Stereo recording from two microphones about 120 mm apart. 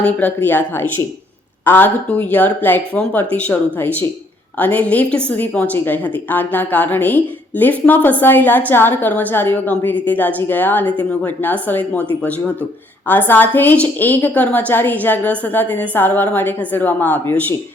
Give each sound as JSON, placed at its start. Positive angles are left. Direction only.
{"t": 0.0, "sound": "a woman's voice", "side_deg": 15}
{"t": 13.1, "sound": "a woman's voice", "side_deg": 15}